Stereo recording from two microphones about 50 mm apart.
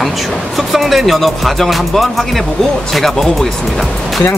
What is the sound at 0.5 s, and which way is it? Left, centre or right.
Speech, centre.